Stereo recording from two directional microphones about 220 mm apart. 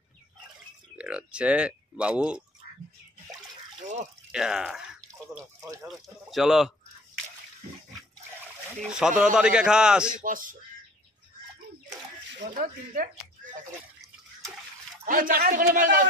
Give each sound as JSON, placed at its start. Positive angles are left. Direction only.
{"t": 0.9, "sound": "speech", "side_deg": -5}
{"t": 4.3, "sound": "speech", "side_deg": -5}
{"t": 5.6, "sound": "speech", "side_deg": -15}
{"t": 6.3, "sound": "speech", "side_deg": 0}
{"t": 8.9, "sound": "speech", "side_deg": -5}
{"t": 10.2, "sound": "a man's voice", "side_deg": -40}
{"t": 12.5, "sound": "a man's voice", "side_deg": -40}
{"t": 15.0, "sound": "a man's voice", "side_deg": -40}